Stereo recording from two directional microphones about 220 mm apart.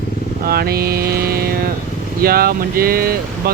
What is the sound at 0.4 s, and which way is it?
Mantra, 45° right (ahead or behind).